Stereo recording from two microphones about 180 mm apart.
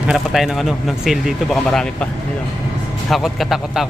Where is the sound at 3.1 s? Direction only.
Centre (ahead or behind).